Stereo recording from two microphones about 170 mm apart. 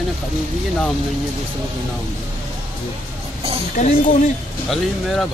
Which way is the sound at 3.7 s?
50° left (ahead or behind).